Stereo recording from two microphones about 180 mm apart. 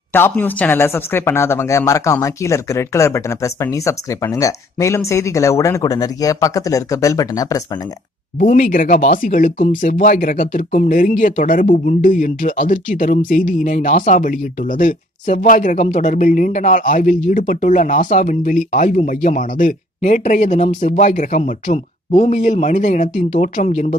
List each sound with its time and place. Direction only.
0.1 s speech: 10° left (ahead or behind)
8.4 s speech: 50° left (ahead or behind)